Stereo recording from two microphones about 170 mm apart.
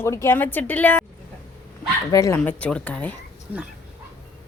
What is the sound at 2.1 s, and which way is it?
Speech, 20° left (ahead or behind).